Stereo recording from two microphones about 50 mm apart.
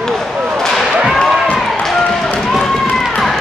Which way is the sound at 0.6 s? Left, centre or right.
Centre.